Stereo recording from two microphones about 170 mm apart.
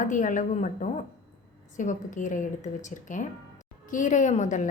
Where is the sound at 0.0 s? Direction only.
50° left (ahead or behind).